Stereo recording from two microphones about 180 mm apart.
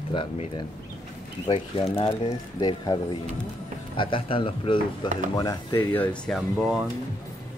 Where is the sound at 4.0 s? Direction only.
30° left (ahead or behind).